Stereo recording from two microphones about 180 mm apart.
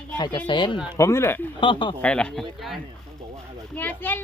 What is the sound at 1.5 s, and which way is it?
Speech, 25° left (ahead or behind).